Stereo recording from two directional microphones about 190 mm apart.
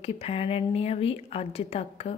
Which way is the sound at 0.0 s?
35° left (ahead or behind).